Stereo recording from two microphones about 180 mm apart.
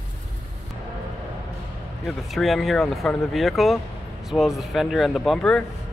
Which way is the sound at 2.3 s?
Centre (ahead or behind).